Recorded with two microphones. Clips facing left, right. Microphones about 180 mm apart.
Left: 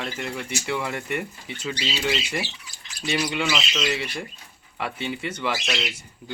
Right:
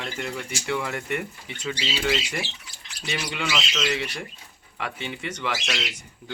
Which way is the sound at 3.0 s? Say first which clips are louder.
Left 5 dB; centre (ahead or behind).